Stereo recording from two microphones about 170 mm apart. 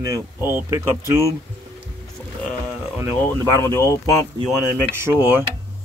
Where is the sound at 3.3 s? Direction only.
15° left (ahead or behind).